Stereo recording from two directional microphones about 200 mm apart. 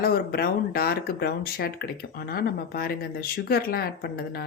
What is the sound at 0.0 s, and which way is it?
Speech, 50° left (ahead or behind).